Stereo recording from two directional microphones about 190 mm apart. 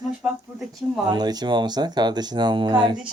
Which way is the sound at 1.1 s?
20° right (ahead or behind).